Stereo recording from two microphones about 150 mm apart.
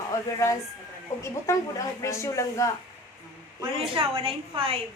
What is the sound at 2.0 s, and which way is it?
Speech, 20° left (ahead or behind).